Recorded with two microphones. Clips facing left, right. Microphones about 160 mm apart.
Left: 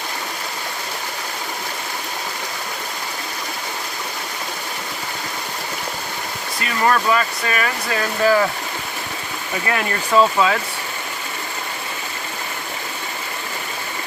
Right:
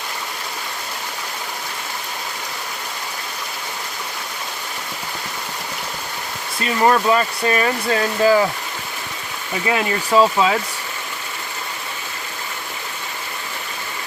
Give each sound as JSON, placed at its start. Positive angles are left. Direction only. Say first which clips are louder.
{"t": 6.8, "sound": "speech", "louder": "right 2 dB", "side_deg": -25}
{"t": 8.2, "sound": "speech", "louder": "right 1 dB", "side_deg": -15}
{"t": 9.6, "sound": "speech", "louder": "right 3 dB", "side_deg": -15}